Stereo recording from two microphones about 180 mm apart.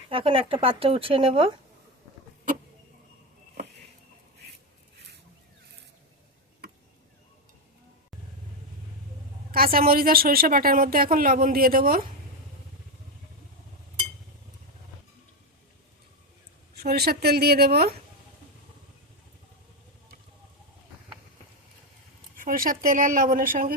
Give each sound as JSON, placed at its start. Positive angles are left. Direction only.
{"t": 0.1, "sound": "speech", "side_deg": -30}
{"t": 9.7, "sound": "speech", "side_deg": -55}
{"t": 16.7, "sound": "a woman's voice", "side_deg": -60}
{"t": 22.4, "sound": "speech", "side_deg": -50}